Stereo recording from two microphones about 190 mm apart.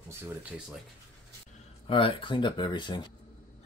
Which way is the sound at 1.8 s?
25° left (ahead or behind).